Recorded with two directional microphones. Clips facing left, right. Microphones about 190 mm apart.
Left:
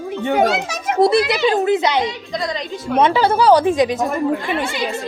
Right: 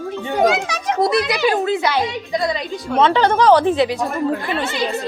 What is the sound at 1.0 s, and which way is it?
Speech, 30° left (ahead or behind).